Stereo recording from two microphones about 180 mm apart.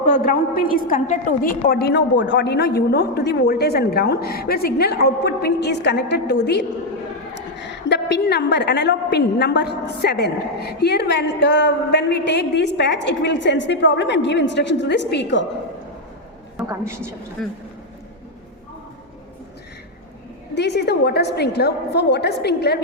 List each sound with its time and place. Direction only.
0.1 s a woman's voice: 50° left (ahead or behind); by 15.4 s 75° left (ahead or behind)
16.6 s a woman's voice: 15° right (ahead or behind)
17.4 s speech: centre (ahead or behind)
20.6 s a woman's voice: 70° left (ahead or behind)